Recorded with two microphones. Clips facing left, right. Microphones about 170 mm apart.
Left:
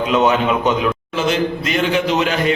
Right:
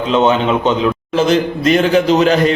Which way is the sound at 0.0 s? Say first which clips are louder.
Right 2 dB; 25° right (ahead or behind).